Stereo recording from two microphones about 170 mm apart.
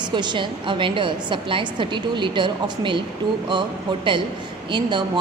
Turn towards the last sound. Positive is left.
turn(degrees=-25)  # may be behind; listen again after turning